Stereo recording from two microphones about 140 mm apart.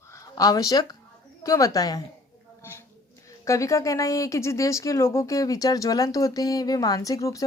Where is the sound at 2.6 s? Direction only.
20° left (ahead or behind).